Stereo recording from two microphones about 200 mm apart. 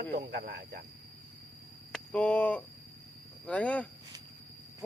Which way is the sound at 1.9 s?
5° left (ahead or behind).